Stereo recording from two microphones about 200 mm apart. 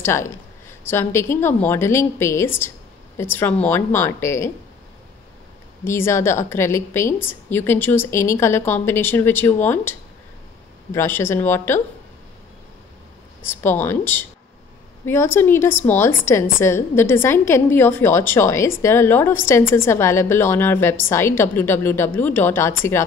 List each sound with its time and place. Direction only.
0.0 s a woman's voice: 15° left (ahead or behind)
5.9 s a woman's voice: 10° left (ahead or behind)
13.5 s a woman's voice: 10° left (ahead or behind)